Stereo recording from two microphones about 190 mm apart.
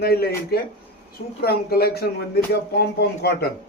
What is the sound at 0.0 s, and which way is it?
Speech, 55° left (ahead or behind).